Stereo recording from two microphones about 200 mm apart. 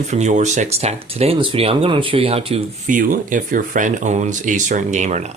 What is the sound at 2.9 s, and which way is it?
Speech, 40° right (ahead or behind).